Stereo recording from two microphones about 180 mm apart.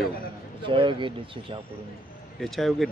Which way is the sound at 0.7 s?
30° right (ahead or behind).